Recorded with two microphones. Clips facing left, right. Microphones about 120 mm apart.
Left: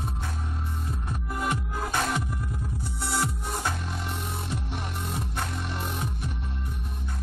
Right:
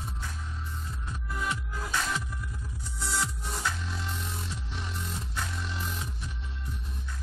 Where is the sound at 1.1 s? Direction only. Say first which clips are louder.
Left 4 dB; 55° left (ahead or behind).